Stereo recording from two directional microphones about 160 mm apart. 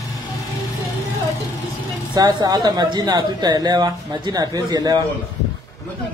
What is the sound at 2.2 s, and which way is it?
Speech, 25° right (ahead or behind).